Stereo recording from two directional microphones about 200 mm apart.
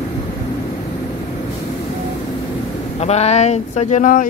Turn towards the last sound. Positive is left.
turn(degrees=40)  # may be behind; listen again after turning